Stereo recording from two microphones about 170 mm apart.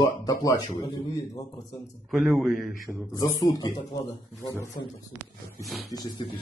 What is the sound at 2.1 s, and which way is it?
Speech, centre (ahead or behind).